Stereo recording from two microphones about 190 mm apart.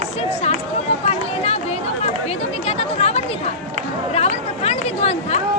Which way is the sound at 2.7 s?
35° left (ahead or behind).